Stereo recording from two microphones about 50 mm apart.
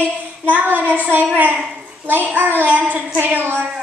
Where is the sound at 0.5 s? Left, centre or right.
Right.